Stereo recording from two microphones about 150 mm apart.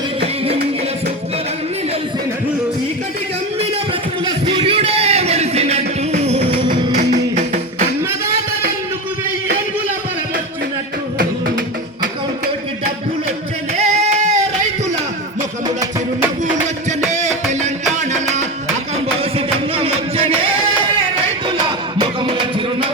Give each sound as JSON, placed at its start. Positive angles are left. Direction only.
{"t": 4.3, "sound": "music", "side_deg": -35}
{"t": 6.9, "sound": "music", "side_deg": -60}
{"t": 13.7, "sound": "singing", "side_deg": -45}
{"t": 17.1, "sound": "music", "side_deg": -50}
{"t": 19.2, "sound": "music", "side_deg": -40}